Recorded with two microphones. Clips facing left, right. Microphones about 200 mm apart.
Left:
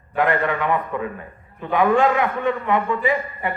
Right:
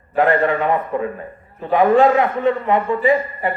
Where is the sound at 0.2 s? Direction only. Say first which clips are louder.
Right 4 dB; 35° right (ahead or behind).